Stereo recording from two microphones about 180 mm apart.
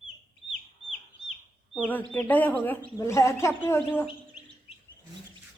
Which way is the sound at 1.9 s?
10° left (ahead or behind).